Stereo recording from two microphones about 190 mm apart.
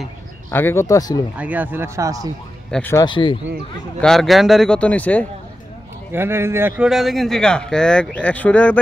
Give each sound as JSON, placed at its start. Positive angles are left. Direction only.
{"t": 0.5, "sound": "speech", "side_deg": 10}
{"t": 1.3, "sound": "speech", "side_deg": -10}
{"t": 2.7, "sound": "speech", "side_deg": 10}
{"t": 3.1, "sound": "speech", "side_deg": 25}
{"t": 4.0, "sound": "speech", "side_deg": 0}
{"t": 6.1, "sound": "speech", "side_deg": -10}
{"t": 6.9, "sound": "speech", "side_deg": 0}